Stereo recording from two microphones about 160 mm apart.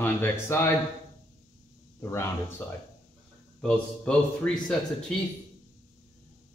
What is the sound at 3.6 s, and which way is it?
A man's voice, 5° left (ahead or behind).